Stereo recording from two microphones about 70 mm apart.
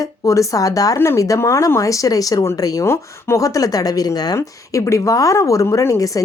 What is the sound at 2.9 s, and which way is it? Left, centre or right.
Speech, left.